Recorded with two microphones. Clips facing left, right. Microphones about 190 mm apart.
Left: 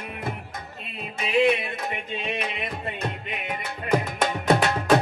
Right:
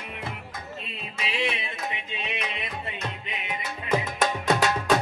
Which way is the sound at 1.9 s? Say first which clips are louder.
Left 5 dB; 50° left (ahead or behind).